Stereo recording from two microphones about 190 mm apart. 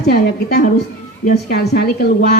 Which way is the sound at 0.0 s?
55° left (ahead or behind).